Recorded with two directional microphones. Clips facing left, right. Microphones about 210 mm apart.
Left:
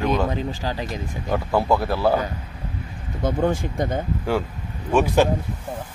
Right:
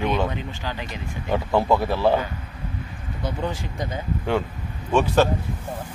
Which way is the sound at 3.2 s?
50° left (ahead or behind).